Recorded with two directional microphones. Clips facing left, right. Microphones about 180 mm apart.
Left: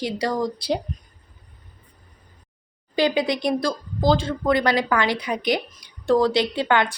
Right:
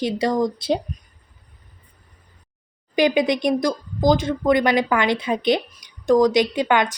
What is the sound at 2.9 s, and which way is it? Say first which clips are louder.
Speech: right 3 dB; 20° right (ahead or behind).